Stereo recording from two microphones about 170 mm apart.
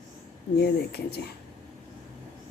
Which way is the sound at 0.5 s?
70° left (ahead or behind).